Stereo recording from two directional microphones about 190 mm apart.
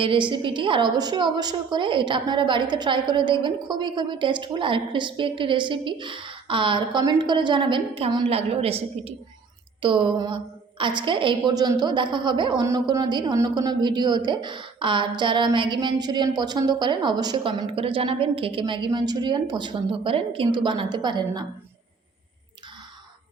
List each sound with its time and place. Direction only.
0.0 s a woman's voice: 25° right (ahead or behind)